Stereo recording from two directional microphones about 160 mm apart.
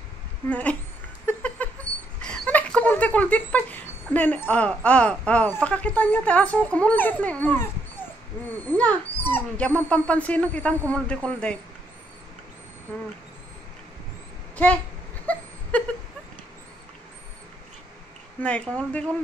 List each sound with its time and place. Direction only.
0.5 s speech: 10° left (ahead or behind)
1.2 s a sound: 10° left (ahead or behind)
2.2 s dog: 5° left (ahead or behind)
4.1 s speech: 10° left (ahead or behind)
8.6 s speech: 10° left (ahead or behind)
15.3 s a sound: 10° left (ahead or behind)
18.4 s speech: 5° left (ahead or behind)